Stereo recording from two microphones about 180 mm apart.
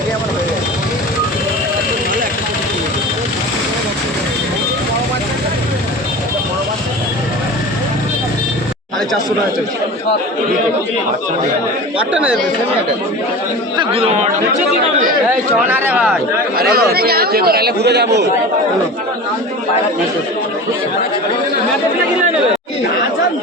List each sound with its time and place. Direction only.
11.9 s speech: 5° right (ahead or behind)
13.7 s a man's voice: 30° right (ahead or behind)
15.7 s speech: 10° right (ahead or behind)
16.6 s a man's voice: 60° right (ahead or behind)